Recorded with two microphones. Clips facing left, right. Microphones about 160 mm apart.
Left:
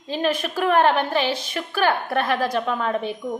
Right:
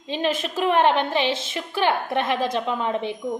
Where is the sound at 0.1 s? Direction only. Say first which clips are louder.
Left 1 dB; 20° right (ahead or behind).